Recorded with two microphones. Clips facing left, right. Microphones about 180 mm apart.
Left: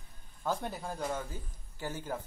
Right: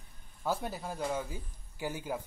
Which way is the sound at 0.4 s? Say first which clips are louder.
Even; 5° right (ahead or behind).